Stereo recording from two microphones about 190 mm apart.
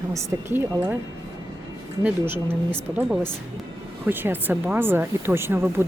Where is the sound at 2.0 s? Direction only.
10° right (ahead or behind).